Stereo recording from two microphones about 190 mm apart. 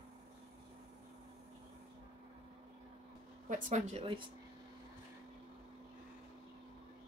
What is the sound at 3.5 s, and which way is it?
Speech, 35° right (ahead or behind).